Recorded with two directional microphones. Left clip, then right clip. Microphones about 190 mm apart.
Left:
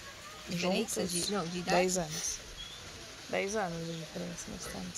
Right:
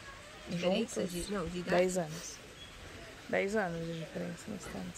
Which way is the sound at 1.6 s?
5° right (ahead or behind).